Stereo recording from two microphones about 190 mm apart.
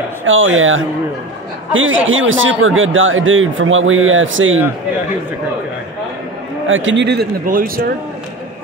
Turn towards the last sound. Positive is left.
turn(degrees=-50)  # may be behind; listen again after turning